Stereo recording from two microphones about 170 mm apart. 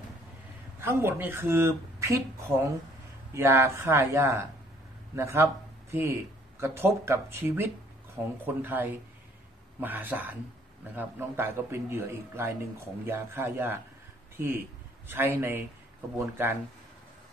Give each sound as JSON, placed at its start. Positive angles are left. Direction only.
{"t": 0.7, "sound": "speech", "side_deg": -15}